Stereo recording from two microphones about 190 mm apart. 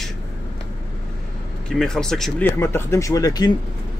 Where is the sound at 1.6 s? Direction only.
Centre (ahead or behind); by 3.5 s 20° left (ahead or behind).